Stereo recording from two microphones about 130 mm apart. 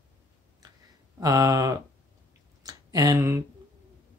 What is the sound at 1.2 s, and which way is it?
Speech, 25° right (ahead or behind).